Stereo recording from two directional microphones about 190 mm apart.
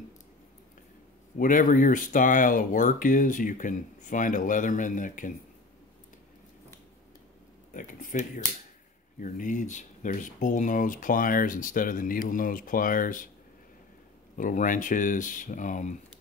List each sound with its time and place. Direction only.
1.4 s speech: 45° left (ahead or behind)
7.7 s speech: 45° left (ahead or behind)
14.3 s speech: 45° left (ahead or behind)